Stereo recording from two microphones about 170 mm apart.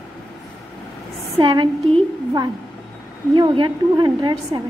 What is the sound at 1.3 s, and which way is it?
A woman's voice, 30° right (ahead or behind).